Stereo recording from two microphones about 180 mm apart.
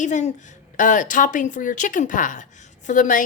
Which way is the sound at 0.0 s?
45° left (ahead or behind).